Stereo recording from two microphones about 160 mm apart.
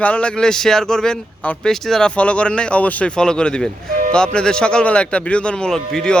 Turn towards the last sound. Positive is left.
turn(degrees=5)  # may be behind; listen again after turning